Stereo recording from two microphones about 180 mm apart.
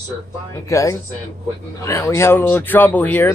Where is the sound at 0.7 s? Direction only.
15° left (ahead or behind).